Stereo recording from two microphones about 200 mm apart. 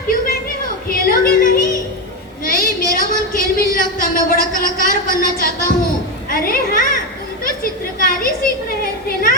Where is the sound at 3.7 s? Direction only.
45° left (ahead or behind).